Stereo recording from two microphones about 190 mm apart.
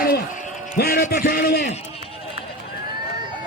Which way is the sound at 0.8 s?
55° left (ahead or behind).